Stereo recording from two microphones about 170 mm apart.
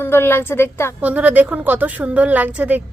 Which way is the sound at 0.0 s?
15° left (ahead or behind).